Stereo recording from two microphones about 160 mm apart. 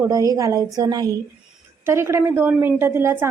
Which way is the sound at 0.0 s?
20° right (ahead or behind).